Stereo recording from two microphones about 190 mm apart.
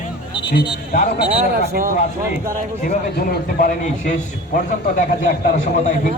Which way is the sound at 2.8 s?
50° left (ahead or behind).